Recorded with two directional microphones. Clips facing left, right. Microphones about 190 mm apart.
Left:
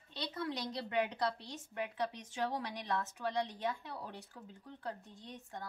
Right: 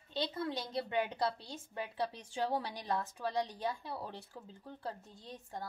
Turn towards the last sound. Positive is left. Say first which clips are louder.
# right 2 dB
turn(degrees=-30)  # may be behind; listen again after turning